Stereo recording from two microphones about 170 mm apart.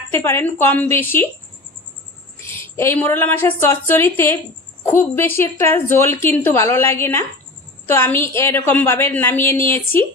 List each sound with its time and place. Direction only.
0.1 s a woman's voice: 15° left (ahead or behind)
2.5 s a woman's voice: 15° left (ahead or behind)